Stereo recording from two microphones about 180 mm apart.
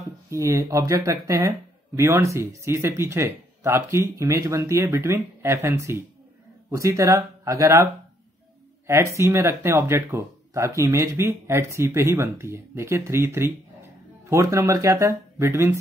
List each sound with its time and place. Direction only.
0.3 s speech: 15° right (ahead or behind)